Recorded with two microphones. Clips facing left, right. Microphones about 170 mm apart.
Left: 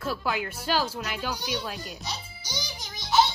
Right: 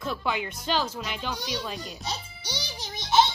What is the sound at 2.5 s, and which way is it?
Music, 30° right (ahead or behind).